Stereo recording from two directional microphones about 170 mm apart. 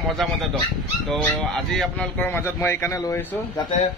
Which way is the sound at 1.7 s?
5° left (ahead or behind).